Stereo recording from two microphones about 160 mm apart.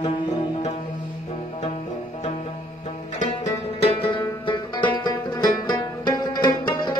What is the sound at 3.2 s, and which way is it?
Music, 45° left (ahead or behind).